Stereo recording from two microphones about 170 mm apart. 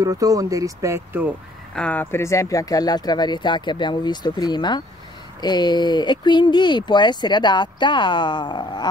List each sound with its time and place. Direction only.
0.0 s speech: 20° right (ahead or behind)
1.8 s speech: 10° left (ahead or behind); by 8.8 s 25° left (ahead or behind)